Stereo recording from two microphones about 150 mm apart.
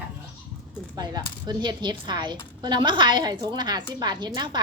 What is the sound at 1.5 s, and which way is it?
A woman's voice, 30° right (ahead or behind).